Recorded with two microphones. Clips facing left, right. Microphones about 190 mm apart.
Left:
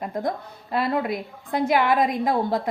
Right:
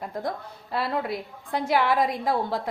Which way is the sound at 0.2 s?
15° left (ahead or behind).